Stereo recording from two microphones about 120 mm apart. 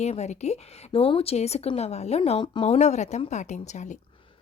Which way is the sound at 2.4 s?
40° left (ahead or behind).